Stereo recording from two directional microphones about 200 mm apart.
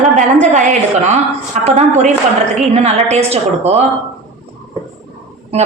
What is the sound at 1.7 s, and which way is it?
A woman's voice, 35° right (ahead or behind).